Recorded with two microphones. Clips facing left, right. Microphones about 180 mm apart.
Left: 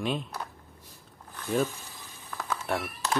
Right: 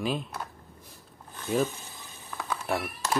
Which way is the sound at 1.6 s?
20° right (ahead or behind).